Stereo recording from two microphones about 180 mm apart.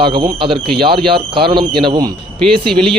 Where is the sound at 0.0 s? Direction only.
25° right (ahead or behind).